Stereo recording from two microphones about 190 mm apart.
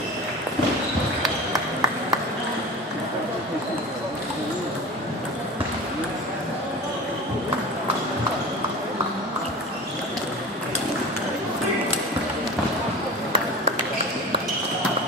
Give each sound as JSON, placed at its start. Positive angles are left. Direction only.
{"t": 1.2, "sound": "ping", "side_deg": -20}